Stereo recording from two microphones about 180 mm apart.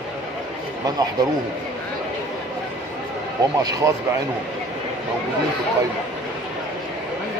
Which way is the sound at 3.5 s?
20° right (ahead or behind).